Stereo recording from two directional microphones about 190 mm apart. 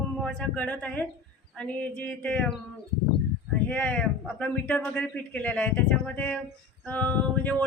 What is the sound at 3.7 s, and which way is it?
Speech, 5° left (ahead or behind).